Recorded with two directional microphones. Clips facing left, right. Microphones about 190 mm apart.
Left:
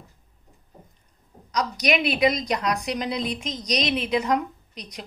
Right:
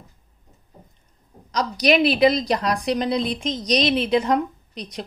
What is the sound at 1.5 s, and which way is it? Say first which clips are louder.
A woman's voice: right 4 dB; 30° right (ahead or behind).